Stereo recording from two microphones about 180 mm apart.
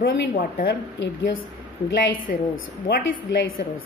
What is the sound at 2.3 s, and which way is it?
Speech, 45° left (ahead or behind).